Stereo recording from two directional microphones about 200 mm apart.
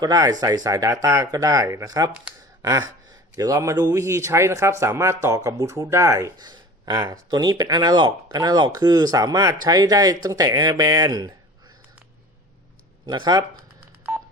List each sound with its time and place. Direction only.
0.0 s speech: 20° right (ahead or behind)
2.6 s a sound: 15° right (ahead or behind)
3.1 s a man's voice: 20° right (ahead or behind)
13.1 s a man's voice: 20° right (ahead or behind)